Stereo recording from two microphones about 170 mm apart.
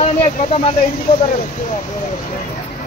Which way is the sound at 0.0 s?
35° left (ahead or behind).